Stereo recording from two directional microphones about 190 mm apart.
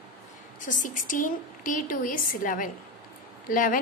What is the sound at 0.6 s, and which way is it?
A woman's voice, 45° left (ahead or behind).